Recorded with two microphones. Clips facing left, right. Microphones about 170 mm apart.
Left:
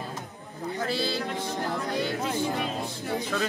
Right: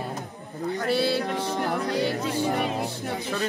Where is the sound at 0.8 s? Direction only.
60° right (ahead or behind).